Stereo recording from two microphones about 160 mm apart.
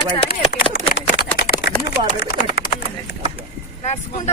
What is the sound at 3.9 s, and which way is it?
Speech, 45° left (ahead or behind).